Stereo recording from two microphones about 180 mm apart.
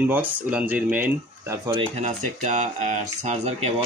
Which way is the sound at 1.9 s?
40° right (ahead or behind).